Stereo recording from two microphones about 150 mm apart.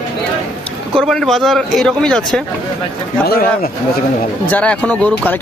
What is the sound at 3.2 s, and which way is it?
Speech, 90° left.